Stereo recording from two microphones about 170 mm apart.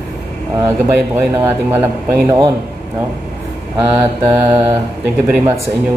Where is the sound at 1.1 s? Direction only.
15° right (ahead or behind).